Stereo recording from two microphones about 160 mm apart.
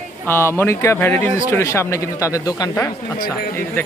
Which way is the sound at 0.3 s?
15° left (ahead or behind).